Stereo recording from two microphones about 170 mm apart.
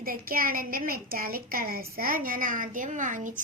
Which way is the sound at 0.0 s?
55° right (ahead or behind).